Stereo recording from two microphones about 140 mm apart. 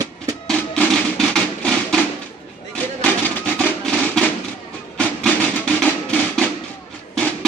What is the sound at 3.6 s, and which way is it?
Music, 5° left (ahead or behind).